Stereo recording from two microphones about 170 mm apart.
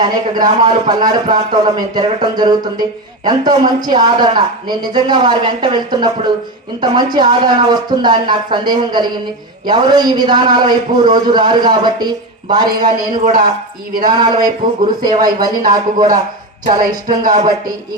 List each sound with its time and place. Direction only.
0.0 s a man's voice: 25° right (ahead or behind)